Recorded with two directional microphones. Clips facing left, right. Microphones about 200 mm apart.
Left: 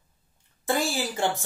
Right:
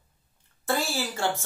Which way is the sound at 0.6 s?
15° left (ahead or behind).